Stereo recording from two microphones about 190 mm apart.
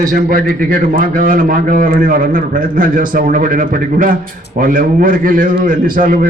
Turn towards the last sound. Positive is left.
turn(degrees=-45)  # may be behind; listen again after turning